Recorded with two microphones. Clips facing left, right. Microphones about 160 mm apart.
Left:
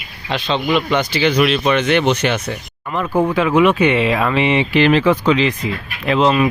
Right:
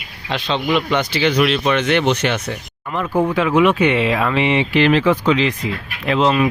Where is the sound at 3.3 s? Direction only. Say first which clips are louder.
Left 1 dB; 10° left (ahead or behind).